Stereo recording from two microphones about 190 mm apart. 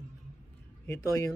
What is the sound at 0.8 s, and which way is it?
Speech, 15° left (ahead or behind).